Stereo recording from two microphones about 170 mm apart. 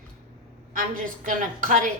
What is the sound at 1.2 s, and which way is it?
Speech, 50° right (ahead or behind).